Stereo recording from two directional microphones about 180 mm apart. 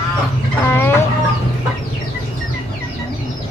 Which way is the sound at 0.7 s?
15° left (ahead or behind).